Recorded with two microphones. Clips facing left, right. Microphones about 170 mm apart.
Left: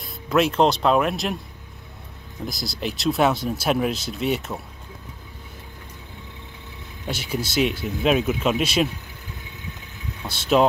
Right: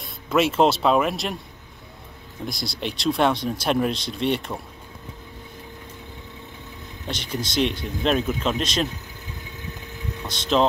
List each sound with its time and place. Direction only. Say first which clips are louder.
0.0 s speech: left 1 dB; centre (ahead or behind)
2.4 s speech: left 1 dB; centre (ahead or behind)
7.1 s speech: left 2 dB; 5° left (ahead or behind)
10.2 s speech: left 2 dB; 5° left (ahead or behind)